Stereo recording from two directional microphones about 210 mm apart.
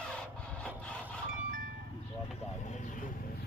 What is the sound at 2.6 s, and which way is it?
Speech, 35° left (ahead or behind).